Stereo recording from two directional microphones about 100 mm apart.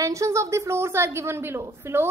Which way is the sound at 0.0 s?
30° right (ahead or behind).